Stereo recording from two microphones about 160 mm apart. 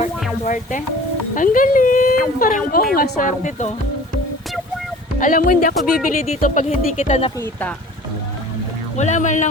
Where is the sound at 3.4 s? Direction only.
50° left (ahead or behind).